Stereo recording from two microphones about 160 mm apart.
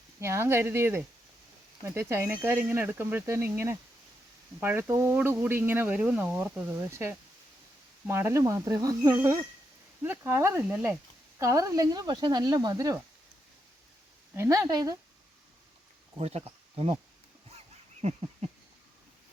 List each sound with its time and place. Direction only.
0.2 s speech: 15° right (ahead or behind)
14.3 s speech: 15° right (ahead or behind)
16.1 s speech: 40° right (ahead or behind)
18.0 s a sound: 40° right (ahead or behind)